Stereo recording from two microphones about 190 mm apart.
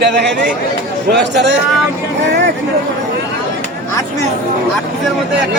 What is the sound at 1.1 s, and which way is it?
Speech, 65° right (ahead or behind).